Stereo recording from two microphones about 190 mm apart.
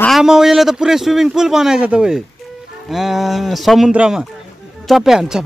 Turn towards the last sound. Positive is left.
turn(degrees=-5)  # may be behind; listen again after turning